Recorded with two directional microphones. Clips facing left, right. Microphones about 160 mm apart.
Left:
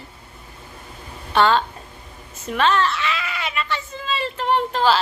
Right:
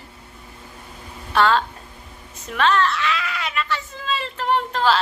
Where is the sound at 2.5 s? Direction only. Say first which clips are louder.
Even; centre (ahead or behind).